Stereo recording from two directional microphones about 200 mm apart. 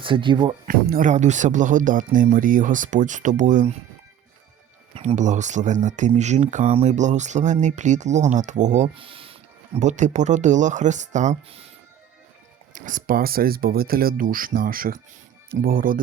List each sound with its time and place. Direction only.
0.0 s speech: 25° right (ahead or behind)
0.6 s speech: 45° right (ahead or behind)
4.9 s speech: 35° right (ahead or behind)
12.7 s speech: 40° right (ahead or behind)